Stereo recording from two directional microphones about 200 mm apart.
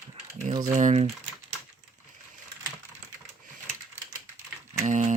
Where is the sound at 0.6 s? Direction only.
40° right (ahead or behind).